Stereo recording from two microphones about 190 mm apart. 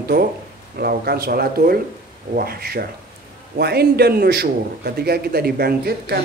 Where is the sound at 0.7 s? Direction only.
55° right (ahead or behind).